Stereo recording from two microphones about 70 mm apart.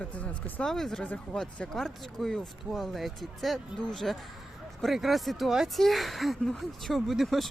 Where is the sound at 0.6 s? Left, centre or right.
Centre.